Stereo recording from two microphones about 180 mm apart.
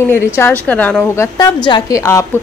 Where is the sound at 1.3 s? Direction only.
25° left (ahead or behind).